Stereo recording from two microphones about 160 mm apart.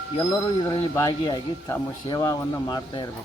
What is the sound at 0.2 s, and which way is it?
A man's voice, 20° left (ahead or behind).